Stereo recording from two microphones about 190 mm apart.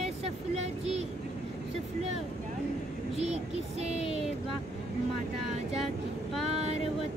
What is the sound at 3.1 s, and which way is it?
Vehicle, 35° right (ahead or behind).